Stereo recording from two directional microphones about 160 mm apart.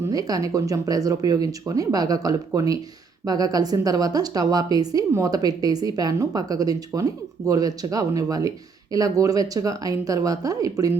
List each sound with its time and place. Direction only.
0.1 s a woman's voice: 25° right (ahead or behind)